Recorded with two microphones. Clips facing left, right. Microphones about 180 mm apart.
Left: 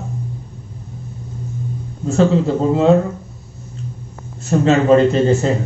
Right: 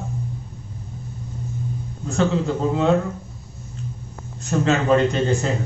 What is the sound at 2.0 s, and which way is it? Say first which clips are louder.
Speech: left 6 dB; 30° left (ahead or behind).